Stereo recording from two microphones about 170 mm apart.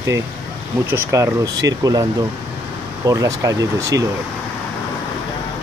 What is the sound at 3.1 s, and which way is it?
Speech, 20° right (ahead or behind).